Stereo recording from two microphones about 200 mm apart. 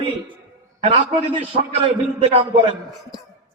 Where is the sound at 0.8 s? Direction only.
25° right (ahead or behind).